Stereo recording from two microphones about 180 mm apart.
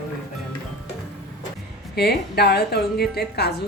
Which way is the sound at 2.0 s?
60° left (ahead or behind).